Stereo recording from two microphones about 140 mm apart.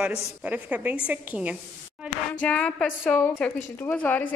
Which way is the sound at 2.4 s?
5° left (ahead or behind).